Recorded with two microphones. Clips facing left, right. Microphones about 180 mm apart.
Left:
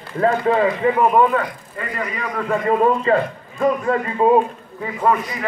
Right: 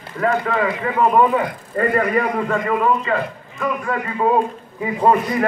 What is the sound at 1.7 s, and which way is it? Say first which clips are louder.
Speech: right 13 dB; 55° right (ahead or behind).